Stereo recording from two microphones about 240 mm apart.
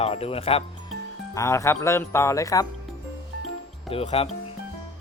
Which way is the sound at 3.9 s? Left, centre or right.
Left.